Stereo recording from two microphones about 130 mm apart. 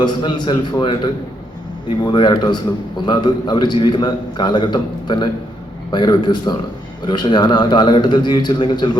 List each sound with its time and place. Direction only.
0.0 s a man's voice: 35° left (ahead or behind)
2.0 s a man's voice: 35° left (ahead or behind)